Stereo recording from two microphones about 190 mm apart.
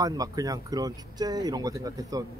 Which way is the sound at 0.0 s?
20° right (ahead or behind).